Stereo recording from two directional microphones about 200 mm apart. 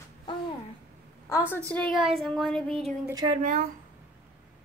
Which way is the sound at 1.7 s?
5° left (ahead or behind).